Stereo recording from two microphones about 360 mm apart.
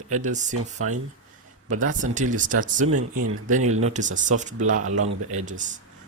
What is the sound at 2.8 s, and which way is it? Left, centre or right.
Speech, right.